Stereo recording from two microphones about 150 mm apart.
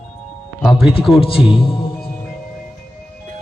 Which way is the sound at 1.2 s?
35° left (ahead or behind).